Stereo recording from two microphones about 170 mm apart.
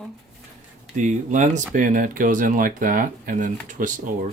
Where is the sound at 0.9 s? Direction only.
45° right (ahead or behind).